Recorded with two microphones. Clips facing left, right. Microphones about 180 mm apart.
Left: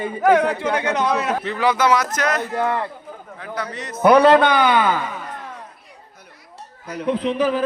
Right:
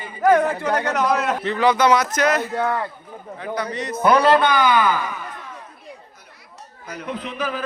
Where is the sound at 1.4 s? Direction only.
5° left (ahead or behind).